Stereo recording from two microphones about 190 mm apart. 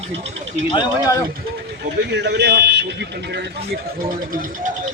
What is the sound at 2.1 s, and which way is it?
Speech, 65° right (ahead or behind).